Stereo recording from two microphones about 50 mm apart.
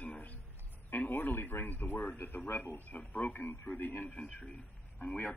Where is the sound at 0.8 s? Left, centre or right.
Left.